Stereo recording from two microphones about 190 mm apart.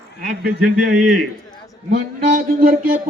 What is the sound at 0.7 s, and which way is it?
Speech, 45° right (ahead or behind).